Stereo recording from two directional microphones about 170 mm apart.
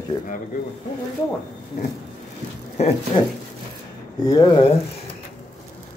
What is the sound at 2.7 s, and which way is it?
Speech, 35° left (ahead or behind).